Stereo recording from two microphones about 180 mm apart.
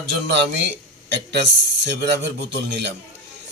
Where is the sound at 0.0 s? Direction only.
75° right (ahead or behind).